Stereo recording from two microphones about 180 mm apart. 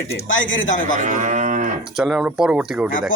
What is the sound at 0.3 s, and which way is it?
Speech, 90° left.